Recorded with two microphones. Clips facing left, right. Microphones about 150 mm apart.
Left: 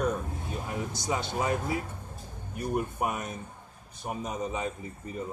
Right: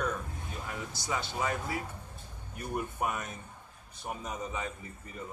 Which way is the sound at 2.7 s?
20° left (ahead or behind).